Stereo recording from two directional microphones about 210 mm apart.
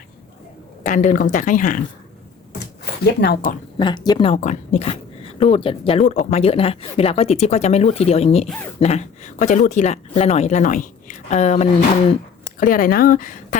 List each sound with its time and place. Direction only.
0.9 s speech: 40° left (ahead or behind)
3.2 s speech: 50° left (ahead or behind)
3.8 s speech: 20° left (ahead or behind); by 13.6 s 40° left (ahead or behind)